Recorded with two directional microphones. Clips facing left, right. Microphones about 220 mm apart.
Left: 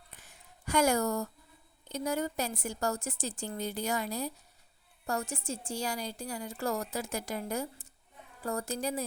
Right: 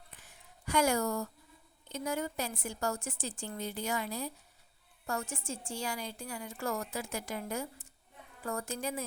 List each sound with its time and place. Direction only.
0.6 s a woman's voice: 40° left (ahead or behind)